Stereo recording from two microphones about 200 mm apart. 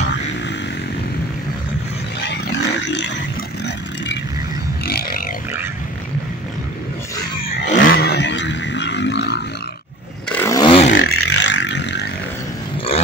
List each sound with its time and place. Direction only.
2.2 s roaring cats: 60° left (ahead or behind)
3.6 s vehicle: 60° left (ahead or behind)
4.8 s a sound: 50° left (ahead or behind)
7.8 s wild animals: 50° left (ahead or behind)
10.3 s a sound: 15° left (ahead or behind)
10.7 s vehicle: 30° left (ahead or behind)
11.0 s vehicle: 55° left (ahead or behind)